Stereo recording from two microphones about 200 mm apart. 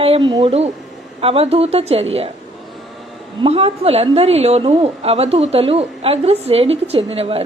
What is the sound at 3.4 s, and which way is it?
A woman's voice, 30° right (ahead or behind).